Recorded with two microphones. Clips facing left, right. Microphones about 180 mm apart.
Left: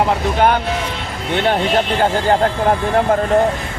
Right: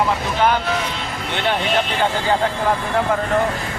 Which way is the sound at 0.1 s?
50° left (ahead or behind).